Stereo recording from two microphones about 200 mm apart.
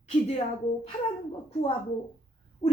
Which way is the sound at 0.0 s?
30° left (ahead or behind).